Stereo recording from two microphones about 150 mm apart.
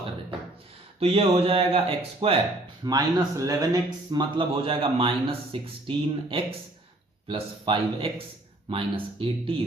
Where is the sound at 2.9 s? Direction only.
25° right (ahead or behind).